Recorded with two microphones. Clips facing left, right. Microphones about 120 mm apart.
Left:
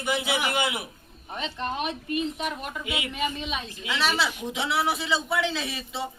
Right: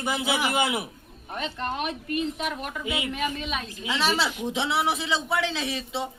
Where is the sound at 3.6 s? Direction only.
35° right (ahead or behind).